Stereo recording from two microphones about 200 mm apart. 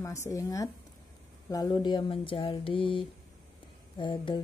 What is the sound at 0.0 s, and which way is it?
Speech, 15° left (ahead or behind).